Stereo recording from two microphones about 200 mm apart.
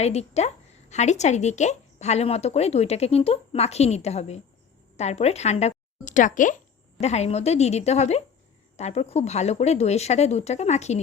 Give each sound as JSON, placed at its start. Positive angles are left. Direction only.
{"t": 0.0, "sound": "speech", "side_deg": 30}